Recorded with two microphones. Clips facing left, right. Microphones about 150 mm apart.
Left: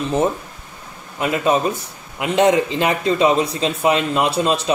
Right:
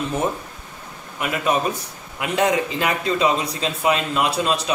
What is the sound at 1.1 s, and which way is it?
A man's voice, 25° left (ahead or behind).